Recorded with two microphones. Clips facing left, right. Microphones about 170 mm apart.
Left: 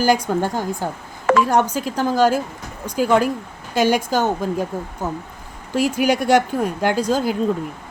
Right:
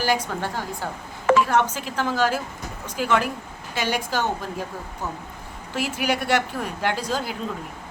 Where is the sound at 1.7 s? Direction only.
40° left (ahead or behind).